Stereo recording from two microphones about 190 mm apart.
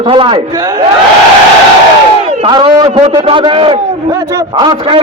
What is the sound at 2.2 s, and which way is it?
A man's voice, 25° right (ahead or behind).